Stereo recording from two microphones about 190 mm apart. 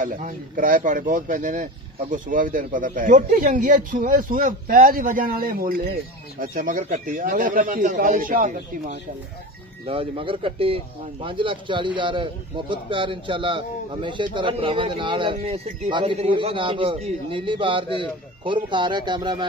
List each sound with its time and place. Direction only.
0.0 s speech: 45° right (ahead or behind)
9.8 s a man's voice: 30° right (ahead or behind)